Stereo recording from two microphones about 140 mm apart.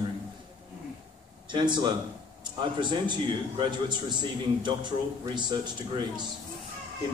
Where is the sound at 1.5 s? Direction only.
35° right (ahead or behind).